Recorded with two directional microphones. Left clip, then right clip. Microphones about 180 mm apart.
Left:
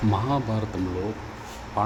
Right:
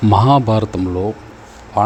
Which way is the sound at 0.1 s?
50° right (ahead or behind).